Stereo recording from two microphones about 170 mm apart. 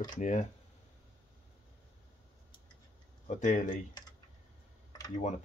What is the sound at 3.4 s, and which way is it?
Speech, 50° left (ahead or behind).